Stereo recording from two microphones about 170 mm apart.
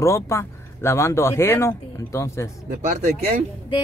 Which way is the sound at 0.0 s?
15° left (ahead or behind).